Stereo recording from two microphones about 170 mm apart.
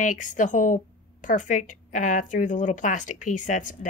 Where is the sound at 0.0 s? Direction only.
50° left (ahead or behind).